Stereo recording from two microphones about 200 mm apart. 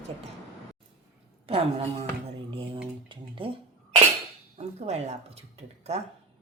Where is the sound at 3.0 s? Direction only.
25° right (ahead or behind).